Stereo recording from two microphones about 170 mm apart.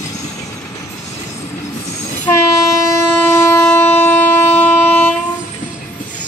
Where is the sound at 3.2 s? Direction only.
15° left (ahead or behind).